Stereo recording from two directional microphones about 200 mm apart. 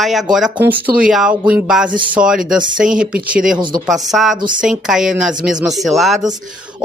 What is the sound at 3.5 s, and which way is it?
Speech, 20° right (ahead or behind).